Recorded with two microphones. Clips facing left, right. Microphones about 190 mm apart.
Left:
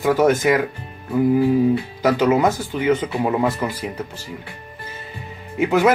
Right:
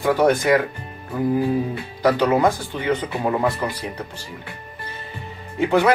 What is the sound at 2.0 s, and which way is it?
Speech, 10° left (ahead or behind).